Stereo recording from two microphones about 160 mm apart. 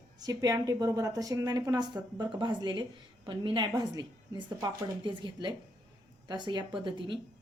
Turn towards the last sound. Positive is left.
turn(degrees=-30)  # may be behind; listen again after turning